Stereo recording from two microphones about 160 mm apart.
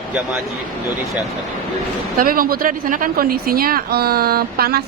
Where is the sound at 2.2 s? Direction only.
65° right (ahead or behind).